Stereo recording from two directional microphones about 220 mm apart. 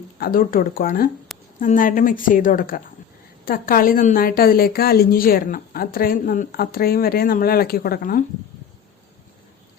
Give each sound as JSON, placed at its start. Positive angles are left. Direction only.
{"t": 0.2, "sound": "a woman's voice", "side_deg": 40}